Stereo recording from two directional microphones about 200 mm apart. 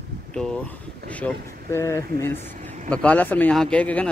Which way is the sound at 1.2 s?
15° left (ahead or behind).